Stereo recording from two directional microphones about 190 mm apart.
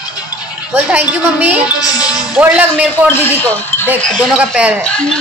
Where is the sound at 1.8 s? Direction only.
20° left (ahead or behind).